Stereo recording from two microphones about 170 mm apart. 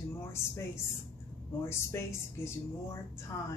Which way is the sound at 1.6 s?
15° left (ahead or behind).